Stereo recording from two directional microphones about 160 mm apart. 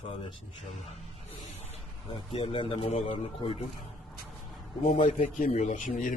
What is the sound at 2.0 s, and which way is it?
A man's voice, 35° left (ahead or behind).